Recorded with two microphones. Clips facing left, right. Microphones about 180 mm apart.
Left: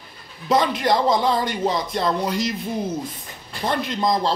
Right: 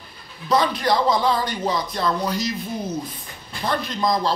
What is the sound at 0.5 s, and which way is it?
Speech, 20° left (ahead or behind).